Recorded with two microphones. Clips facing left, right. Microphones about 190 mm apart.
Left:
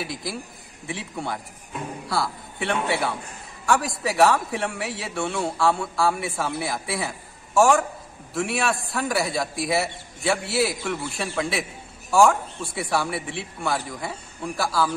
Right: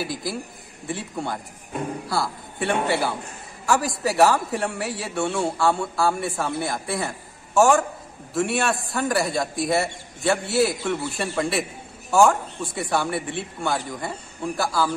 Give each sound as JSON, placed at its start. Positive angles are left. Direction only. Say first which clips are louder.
{"t": 0.0, "sound": "a man's voice", "louder": "right 3 dB", "side_deg": 0}